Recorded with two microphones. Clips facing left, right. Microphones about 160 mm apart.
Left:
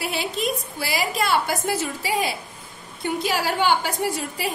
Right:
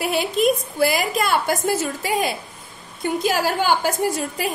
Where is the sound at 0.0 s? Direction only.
55° right (ahead or behind).